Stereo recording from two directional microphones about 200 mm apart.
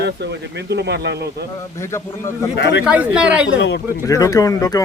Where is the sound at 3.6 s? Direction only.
55° left (ahead or behind).